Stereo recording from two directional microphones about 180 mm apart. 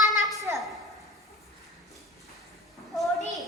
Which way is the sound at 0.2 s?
Centre (ahead or behind).